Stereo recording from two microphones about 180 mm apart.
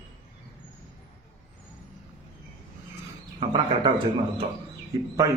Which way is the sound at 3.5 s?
25° right (ahead or behind).